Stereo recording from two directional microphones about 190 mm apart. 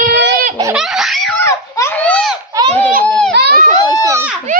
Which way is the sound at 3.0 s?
5° left (ahead or behind).